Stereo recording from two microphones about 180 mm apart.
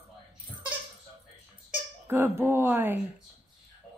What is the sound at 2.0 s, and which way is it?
Speech, 15° right (ahead or behind).